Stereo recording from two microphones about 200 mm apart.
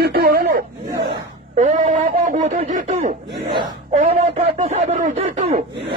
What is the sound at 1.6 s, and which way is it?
Speech, 40° right (ahead or behind).